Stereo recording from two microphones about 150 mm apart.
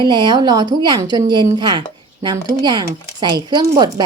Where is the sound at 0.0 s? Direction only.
30° right (ahead or behind).